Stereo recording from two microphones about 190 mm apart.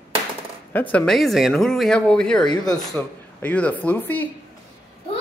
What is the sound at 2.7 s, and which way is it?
A woman's voice, centre (ahead or behind).